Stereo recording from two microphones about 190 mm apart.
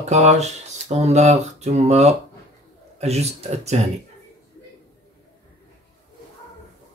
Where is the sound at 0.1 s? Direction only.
35° right (ahead or behind).